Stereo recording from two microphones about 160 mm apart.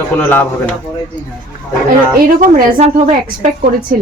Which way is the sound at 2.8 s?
45° right (ahead or behind).